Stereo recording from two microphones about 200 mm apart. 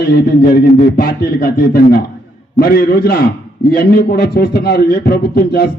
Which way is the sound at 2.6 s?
50° left (ahead or behind).